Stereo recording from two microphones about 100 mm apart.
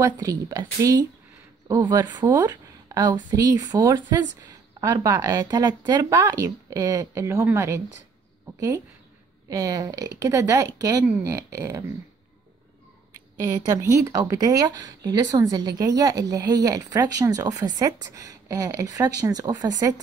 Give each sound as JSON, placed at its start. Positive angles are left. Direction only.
{"t": 0.2, "sound": "a woman's voice", "side_deg": -35}
{"t": 13.4, "sound": "speech", "side_deg": -35}